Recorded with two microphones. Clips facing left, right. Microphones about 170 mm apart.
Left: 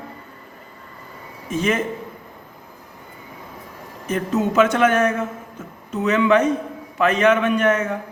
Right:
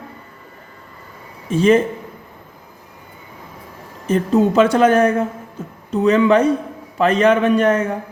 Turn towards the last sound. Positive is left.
turn(degrees=-35)  # may be behind; listen again after turning